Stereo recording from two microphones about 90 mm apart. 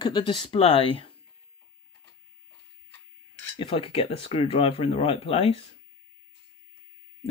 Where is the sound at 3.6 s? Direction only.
75° left (ahead or behind); by 5.6 s 90° left.